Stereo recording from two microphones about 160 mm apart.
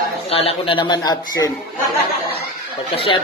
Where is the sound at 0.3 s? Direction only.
35° left (ahead or behind).